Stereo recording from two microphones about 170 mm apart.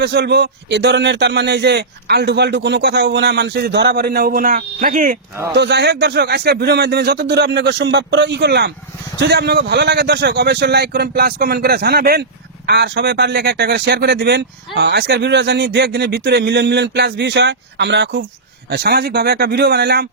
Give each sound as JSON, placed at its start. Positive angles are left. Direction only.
{"t": 0.0, "sound": "speech", "side_deg": -80}
{"t": 5.5, "sound": "a man's voice", "side_deg": -85}
{"t": 12.6, "sound": "a man's voice", "side_deg": -85}
{"t": 18.7, "sound": "a man's voice", "side_deg": -65}